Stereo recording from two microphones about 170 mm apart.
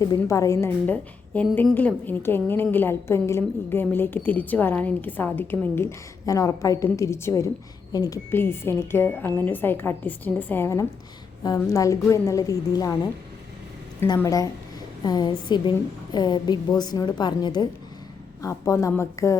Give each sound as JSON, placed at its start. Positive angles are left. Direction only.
{"t": 0.2, "sound": "a woman's voice", "side_deg": 20}
{"t": 14.0, "sound": "a woman's voice", "side_deg": 15}